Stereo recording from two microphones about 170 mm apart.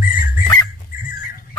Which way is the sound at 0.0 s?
55° left (ahead or behind).